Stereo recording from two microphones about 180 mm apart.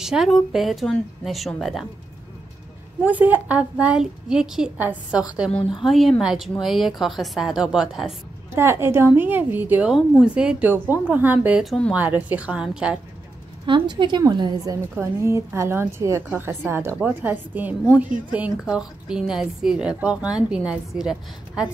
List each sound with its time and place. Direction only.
0.0 s a woman's voice: centre (ahead or behind)
3.0 s a woman's voice: 10° right (ahead or behind)
8.5 s a woman's voice: 15° right (ahead or behind)
12.0 s a woman's voice: 10° right (ahead or behind)
13.7 s a woman's voice: 25° right (ahead or behind); by 21.6 s 5° right (ahead or behind)